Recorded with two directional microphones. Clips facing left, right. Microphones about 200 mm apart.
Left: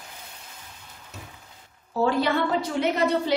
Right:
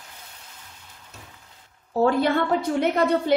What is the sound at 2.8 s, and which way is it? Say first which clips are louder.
Speech: even; 55° right (ahead or behind).